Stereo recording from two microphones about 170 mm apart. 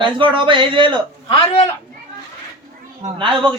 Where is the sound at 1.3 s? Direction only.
35° left (ahead or behind).